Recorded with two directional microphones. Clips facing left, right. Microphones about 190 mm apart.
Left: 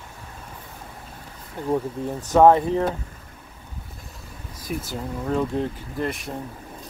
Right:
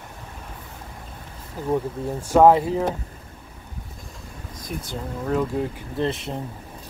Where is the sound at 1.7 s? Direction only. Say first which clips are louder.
Even; 10° right (ahead or behind).